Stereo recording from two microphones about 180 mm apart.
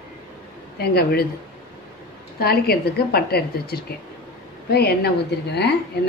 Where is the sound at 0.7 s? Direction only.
60° left (ahead or behind).